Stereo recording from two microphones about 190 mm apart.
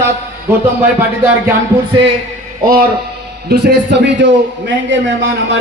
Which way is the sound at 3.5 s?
60° right (ahead or behind).